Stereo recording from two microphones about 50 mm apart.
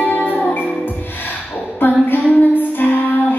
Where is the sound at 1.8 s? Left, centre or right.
Left.